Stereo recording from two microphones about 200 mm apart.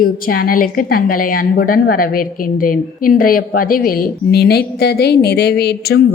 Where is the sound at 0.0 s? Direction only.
45° left (ahead or behind).